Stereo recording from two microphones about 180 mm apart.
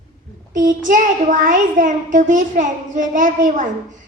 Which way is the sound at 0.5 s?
45° right (ahead or behind).